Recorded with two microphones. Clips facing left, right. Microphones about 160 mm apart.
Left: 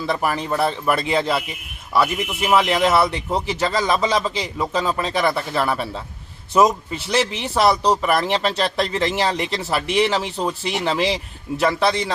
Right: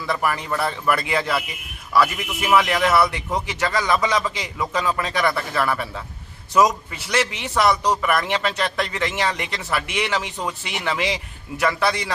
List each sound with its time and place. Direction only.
0.0 s a man's voice: 25° left (ahead or behind)